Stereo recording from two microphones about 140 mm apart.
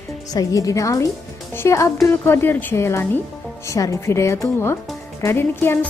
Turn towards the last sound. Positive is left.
turn(degrees=15)  # may be behind; listen again after turning